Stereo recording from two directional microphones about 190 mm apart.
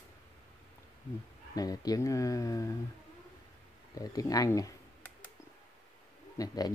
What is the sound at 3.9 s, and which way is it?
Speech, 20° left (ahead or behind).